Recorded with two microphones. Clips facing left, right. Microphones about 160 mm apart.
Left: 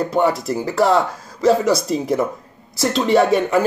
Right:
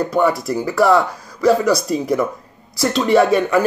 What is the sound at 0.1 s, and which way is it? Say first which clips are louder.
Speech: right 1 dB; 20° left (ahead or behind).